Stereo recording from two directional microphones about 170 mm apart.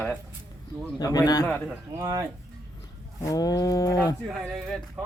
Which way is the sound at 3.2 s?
20° left (ahead or behind).